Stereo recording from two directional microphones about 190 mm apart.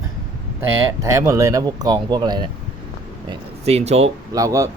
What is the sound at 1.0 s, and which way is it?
Speech, 15° right (ahead or behind).